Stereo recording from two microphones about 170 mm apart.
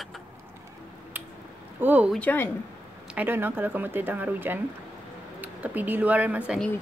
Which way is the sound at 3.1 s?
10° right (ahead or behind).